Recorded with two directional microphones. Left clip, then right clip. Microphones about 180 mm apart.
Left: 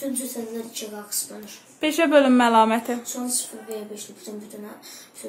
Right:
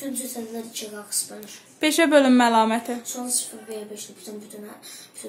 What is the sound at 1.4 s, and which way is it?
A woman's voice, 30° right (ahead or behind).